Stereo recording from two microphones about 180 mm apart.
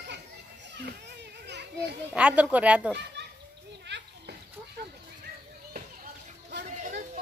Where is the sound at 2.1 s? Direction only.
5° right (ahead or behind).